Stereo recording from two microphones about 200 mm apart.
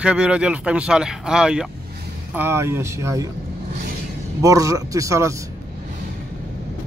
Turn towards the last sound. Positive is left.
turn(degrees=-15)  # may be behind; listen again after turning